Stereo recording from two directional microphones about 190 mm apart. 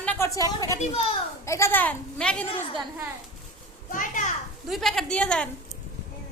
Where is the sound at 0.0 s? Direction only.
5° left (ahead or behind).